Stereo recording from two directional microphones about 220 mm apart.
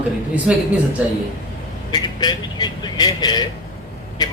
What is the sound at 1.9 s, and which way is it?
A man's voice, 20° left (ahead or behind).